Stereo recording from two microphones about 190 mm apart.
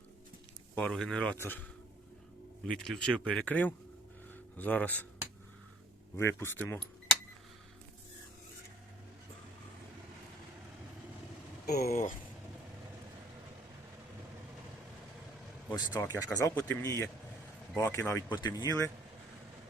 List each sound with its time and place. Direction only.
0.8 s speech: 5° left (ahead or behind)
2.6 s speech: 5° left (ahead or behind)
6.1 s speech: 15° left (ahead or behind)
11.6 s speech: 55° left (ahead or behind)
15.7 s speech: 20° left (ahead or behind)